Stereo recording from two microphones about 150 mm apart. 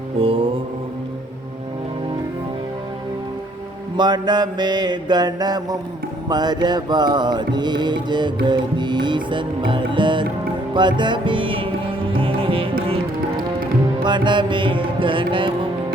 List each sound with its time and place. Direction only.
0.2 s music: 35° right (ahead or behind)
3.9 s music: 30° right (ahead or behind)
14.0 s music: 30° right (ahead or behind)